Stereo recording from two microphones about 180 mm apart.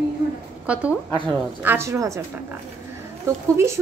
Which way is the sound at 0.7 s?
5° right (ahead or behind).